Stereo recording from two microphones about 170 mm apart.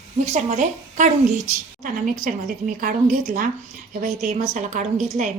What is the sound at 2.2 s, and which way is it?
A woman's voice, 50° right (ahead or behind).